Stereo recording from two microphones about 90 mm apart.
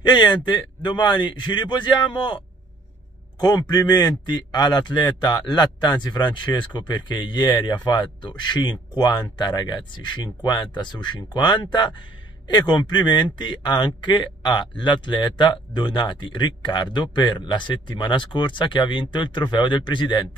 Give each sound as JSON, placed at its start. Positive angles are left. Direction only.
{"t": 0.0, "sound": "a man's voice", "side_deg": 55}